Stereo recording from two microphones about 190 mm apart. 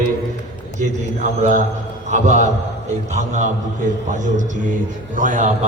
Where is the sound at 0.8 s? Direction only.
40° right (ahead or behind).